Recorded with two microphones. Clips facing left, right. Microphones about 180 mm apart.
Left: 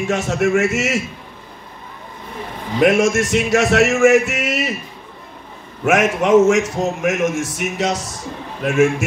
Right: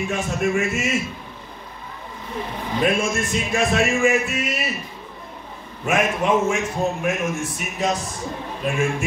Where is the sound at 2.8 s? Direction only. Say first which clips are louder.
Left 8 dB; 80° left.